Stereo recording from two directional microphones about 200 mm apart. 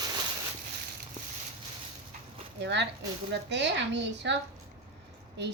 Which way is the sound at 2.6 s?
60° right (ahead or behind).